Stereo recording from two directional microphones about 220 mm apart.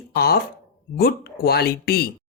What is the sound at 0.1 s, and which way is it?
A man's voice, 45° left (ahead or behind).